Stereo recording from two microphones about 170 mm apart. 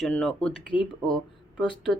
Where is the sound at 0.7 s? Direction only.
5° right (ahead or behind).